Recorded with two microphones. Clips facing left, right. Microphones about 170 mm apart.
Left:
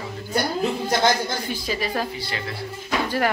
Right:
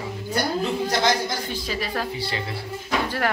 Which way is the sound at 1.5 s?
5° left (ahead or behind).